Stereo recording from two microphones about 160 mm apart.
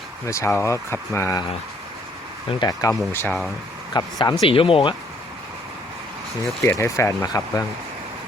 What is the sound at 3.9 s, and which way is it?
Speech, 25° left (ahead or behind).